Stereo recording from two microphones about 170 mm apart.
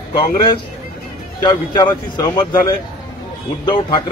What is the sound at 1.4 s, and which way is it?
A man's voice, 25° left (ahead or behind).